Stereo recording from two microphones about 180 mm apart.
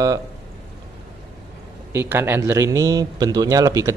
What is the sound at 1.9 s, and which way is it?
Speech, 15° right (ahead or behind).